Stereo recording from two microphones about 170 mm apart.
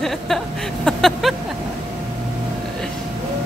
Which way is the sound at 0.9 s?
Centre (ahead or behind).